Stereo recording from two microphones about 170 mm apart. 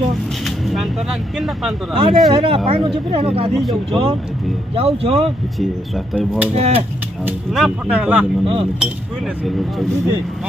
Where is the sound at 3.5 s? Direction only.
Centre (ahead or behind).